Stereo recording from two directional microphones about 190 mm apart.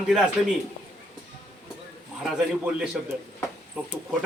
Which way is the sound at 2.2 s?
5° right (ahead or behind).